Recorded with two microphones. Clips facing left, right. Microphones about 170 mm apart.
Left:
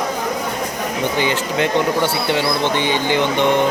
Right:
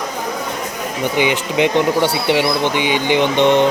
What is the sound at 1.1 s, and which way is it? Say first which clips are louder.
Speech: right 5 dB; 15° right (ahead or behind).